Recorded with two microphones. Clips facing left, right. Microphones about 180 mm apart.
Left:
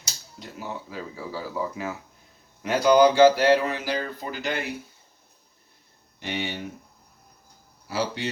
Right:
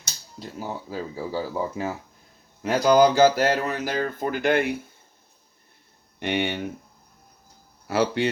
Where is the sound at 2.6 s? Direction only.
40° right (ahead or behind).